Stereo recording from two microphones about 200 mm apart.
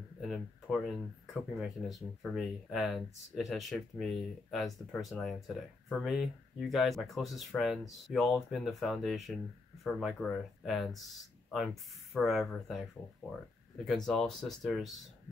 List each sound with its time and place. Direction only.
0.2 s speech: centre (ahead or behind)
13.8 s speech: centre (ahead or behind)